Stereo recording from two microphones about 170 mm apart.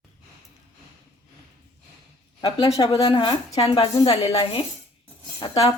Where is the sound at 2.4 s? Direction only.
35° left (ahead or behind).